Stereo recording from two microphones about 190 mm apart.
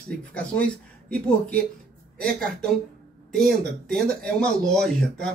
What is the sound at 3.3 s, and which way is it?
Speech, centre (ahead or behind).